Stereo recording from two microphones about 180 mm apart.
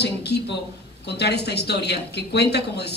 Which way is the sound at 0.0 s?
65° left (ahead or behind).